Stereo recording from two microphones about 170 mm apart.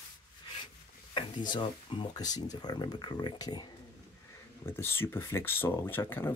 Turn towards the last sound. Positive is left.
turn(degrees=10)  # may be behind; listen again after turning